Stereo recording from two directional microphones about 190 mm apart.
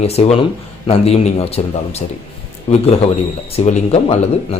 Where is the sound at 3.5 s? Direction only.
35° left (ahead or behind).